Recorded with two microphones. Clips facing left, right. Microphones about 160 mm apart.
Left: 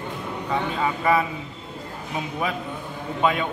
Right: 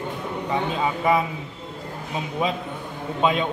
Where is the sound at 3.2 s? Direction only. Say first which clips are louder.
Right 1 dB; 20° right (ahead or behind).